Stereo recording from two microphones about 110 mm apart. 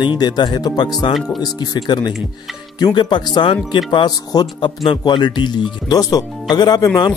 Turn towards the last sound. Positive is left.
turn(degrees=40)  # may be behind; listen again after turning